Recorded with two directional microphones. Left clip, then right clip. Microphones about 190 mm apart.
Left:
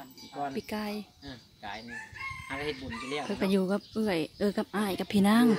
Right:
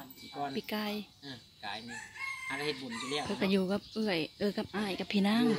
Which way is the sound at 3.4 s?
10° left (ahead or behind).